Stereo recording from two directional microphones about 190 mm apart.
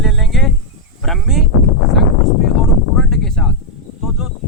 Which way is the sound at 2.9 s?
Centre (ahead or behind).